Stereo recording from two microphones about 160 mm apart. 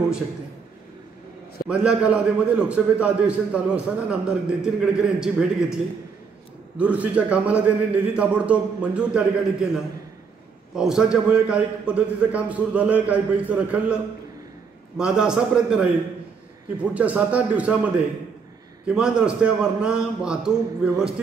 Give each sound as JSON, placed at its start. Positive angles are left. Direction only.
{"t": 1.7, "sound": "a man's voice", "side_deg": -5}
{"t": 6.8, "sound": "a man's voice", "side_deg": -10}
{"t": 10.8, "sound": "a man's voice", "side_deg": -5}
{"t": 15.0, "sound": "a man's voice", "side_deg": -5}